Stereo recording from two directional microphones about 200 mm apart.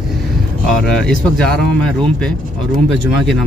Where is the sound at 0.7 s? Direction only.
5° left (ahead or behind).